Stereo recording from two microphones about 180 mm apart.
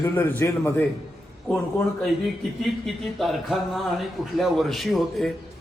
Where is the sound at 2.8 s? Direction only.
Centre (ahead or behind).